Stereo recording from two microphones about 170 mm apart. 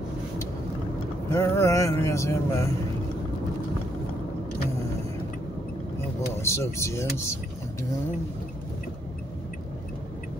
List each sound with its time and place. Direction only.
1.3 s speech: 15° left (ahead or behind)
6.4 s speech: 15° left (ahead or behind)